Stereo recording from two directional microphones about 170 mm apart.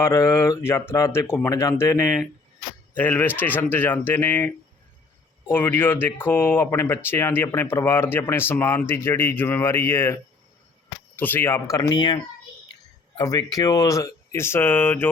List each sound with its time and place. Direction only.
0.0 s speech: 15° left (ahead or behind)
11.2 s speech: 10° left (ahead or behind)